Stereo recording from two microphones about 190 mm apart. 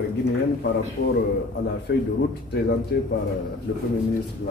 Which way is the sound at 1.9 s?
65° left (ahead or behind).